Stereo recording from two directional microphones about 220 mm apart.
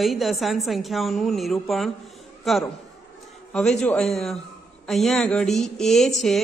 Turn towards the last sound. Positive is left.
turn(degrees=0)  # may be behind; listen again after turning